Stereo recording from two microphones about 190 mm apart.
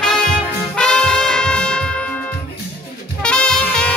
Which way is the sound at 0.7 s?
5° left (ahead or behind).